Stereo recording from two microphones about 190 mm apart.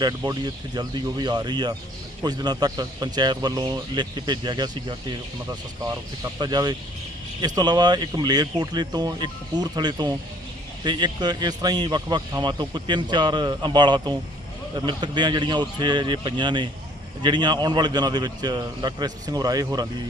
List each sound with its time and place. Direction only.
0.0 s a man's voice: 20° right (ahead or behind)